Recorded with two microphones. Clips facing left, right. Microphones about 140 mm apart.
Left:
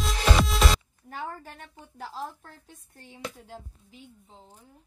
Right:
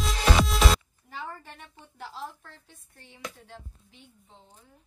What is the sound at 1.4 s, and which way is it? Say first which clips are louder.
A woman's voice: left 2 dB; 45° left (ahead or behind).